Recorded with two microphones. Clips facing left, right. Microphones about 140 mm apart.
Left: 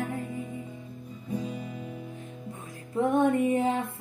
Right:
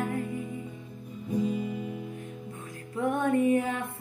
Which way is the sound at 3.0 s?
25° left (ahead or behind).